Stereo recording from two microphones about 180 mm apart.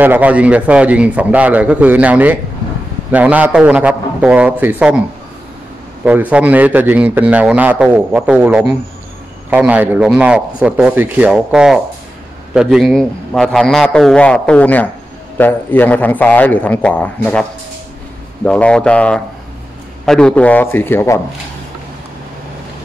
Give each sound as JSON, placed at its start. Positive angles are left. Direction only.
{"t": 0.0, "sound": "a man's voice", "side_deg": -10}
{"t": 6.3, "sound": "a man's voice", "side_deg": -10}